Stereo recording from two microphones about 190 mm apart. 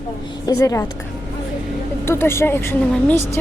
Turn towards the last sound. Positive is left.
turn(degrees=15)  # may be behind; listen again after turning